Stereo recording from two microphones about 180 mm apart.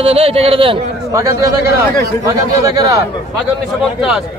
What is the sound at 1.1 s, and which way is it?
A man's voice, 15° right (ahead or behind).